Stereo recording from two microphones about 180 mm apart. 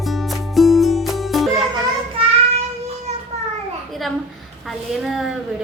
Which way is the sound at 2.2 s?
30° right (ahead or behind).